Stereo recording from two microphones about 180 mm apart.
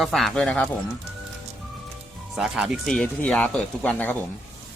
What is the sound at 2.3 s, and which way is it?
Speech, centre (ahead or behind).